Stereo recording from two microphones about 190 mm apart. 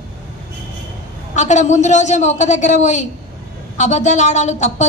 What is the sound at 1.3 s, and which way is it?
Speech, 40° left (ahead or behind).